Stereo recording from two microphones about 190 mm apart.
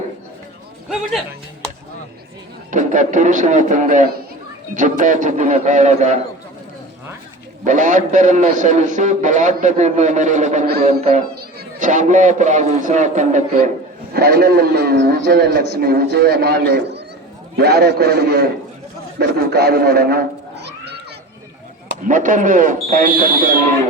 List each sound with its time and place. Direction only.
2.6 s a man's voice: 40° right (ahead or behind)
7.6 s a man's voice: 45° right (ahead or behind)
14.1 s a man's voice: 55° right (ahead or behind)
22.0 s speech: 45° right (ahead or behind)